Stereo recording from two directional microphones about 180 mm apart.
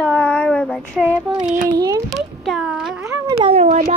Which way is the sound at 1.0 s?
10° right (ahead or behind).